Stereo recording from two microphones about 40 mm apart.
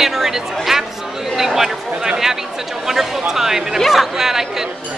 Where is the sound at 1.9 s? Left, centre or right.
Right.